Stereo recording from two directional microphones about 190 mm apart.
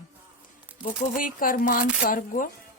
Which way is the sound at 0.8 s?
45° left (ahead or behind).